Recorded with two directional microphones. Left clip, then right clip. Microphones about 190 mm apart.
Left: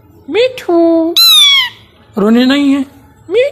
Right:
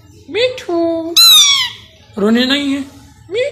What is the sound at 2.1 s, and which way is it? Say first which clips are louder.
Speech: left 3 dB; 50° left (ahead or behind).